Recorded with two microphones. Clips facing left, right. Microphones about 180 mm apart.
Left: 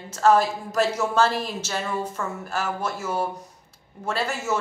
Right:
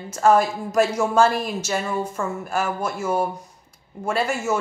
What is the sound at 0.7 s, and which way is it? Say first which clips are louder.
Speech: right 4 dB; 10° right (ahead or behind).